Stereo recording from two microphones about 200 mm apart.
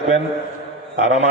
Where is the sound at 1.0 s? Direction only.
35° left (ahead or behind).